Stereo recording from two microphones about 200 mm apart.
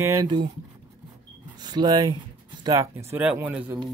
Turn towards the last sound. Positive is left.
turn(degrees=-10)  # may be behind; listen again after turning